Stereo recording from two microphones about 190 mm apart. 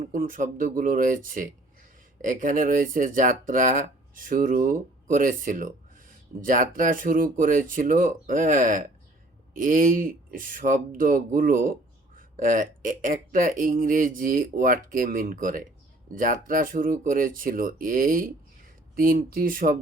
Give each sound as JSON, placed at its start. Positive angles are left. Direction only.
{"t": 0.0, "sound": "speech", "side_deg": -45}